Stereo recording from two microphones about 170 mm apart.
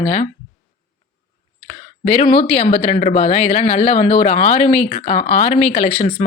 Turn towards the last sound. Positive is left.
turn(degrees=35)  # may be behind; listen again after turning